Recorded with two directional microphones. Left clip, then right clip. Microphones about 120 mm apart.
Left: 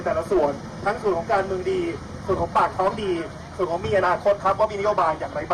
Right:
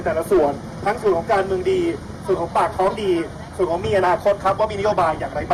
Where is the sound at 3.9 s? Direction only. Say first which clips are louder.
Right 2 dB; 15° right (ahead or behind).